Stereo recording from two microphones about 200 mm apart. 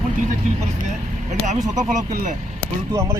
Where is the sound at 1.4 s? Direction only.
40° right (ahead or behind).